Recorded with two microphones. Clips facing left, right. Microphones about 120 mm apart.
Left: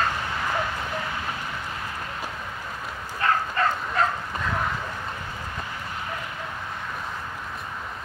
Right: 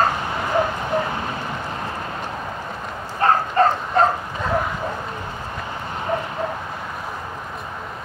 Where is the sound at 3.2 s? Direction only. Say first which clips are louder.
Right 7 dB; 35° right (ahead or behind).